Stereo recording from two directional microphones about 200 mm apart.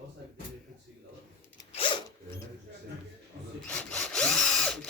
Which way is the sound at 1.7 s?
25° left (ahead or behind).